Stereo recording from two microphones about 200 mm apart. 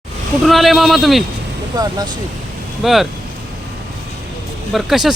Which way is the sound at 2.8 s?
Centre (ahead or behind).